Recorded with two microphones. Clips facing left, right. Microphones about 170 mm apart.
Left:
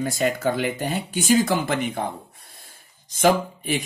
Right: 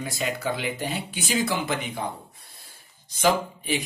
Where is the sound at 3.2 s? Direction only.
50° left (ahead or behind).